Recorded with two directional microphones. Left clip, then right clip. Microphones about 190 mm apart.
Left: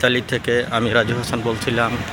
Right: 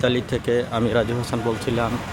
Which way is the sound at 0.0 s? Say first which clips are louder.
Left 3 dB; centre (ahead or behind).